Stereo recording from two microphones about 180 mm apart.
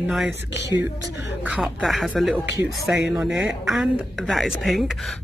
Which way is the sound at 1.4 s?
5° right (ahead or behind).